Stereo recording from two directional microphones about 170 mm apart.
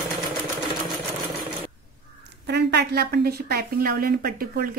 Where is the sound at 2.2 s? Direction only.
80° right.